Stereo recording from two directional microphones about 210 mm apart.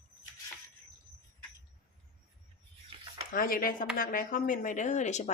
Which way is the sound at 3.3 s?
40° left (ahead or behind).